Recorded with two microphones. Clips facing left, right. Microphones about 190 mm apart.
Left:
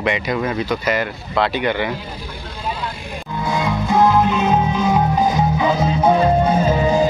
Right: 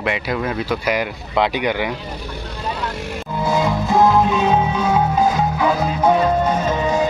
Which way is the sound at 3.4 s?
5° right (ahead or behind).